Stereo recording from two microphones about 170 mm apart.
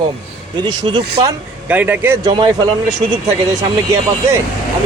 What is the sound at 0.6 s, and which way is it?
Speech, 25° right (ahead or behind).